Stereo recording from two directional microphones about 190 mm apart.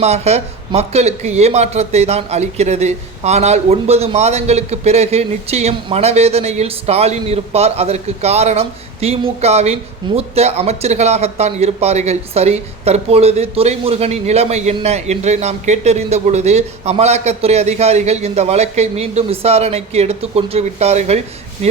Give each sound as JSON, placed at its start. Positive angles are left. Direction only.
{"t": 0.0, "sound": "speech", "side_deg": -35}